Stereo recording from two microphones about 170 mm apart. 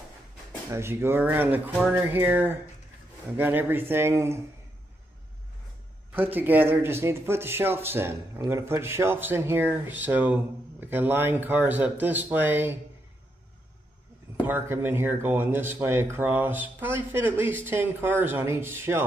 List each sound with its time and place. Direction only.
0.7 s speech: 15° right (ahead or behind)
6.1 s speech: 10° right (ahead or behind)
14.4 s speech: 10° right (ahead or behind)